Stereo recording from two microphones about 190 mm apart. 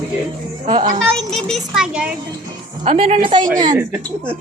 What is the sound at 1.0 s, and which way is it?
A child's voice, centre (ahead or behind).